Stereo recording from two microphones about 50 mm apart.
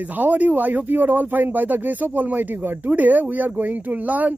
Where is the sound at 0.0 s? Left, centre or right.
Right.